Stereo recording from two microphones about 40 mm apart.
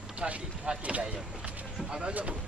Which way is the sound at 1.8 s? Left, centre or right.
Right.